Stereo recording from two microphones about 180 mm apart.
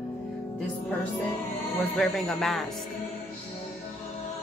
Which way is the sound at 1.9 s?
5° left (ahead or behind).